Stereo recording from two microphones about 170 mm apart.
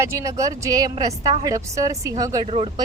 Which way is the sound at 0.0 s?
20° right (ahead or behind).